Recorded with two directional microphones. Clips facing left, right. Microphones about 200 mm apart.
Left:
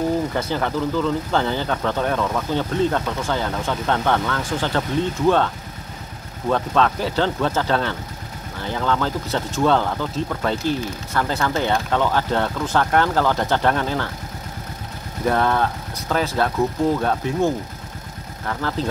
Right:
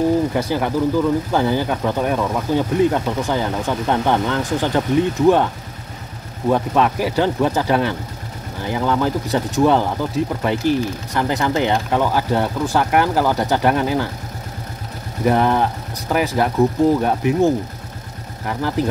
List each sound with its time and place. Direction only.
0.3 s speech: 15° right (ahead or behind)
6.5 s speech: 15° right (ahead or behind)
15.2 s speech: 15° right (ahead or behind)